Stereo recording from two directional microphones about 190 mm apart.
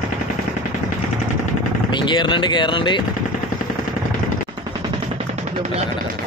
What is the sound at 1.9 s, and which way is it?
Speech, 25° left (ahead or behind).